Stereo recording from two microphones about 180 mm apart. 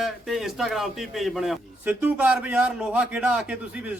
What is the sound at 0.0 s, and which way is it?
A man's voice, centre (ahead or behind).